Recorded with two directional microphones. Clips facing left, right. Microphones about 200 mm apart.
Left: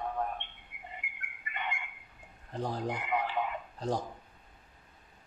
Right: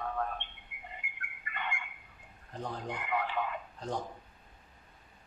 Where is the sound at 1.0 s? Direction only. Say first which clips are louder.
Even; 25° right (ahead or behind).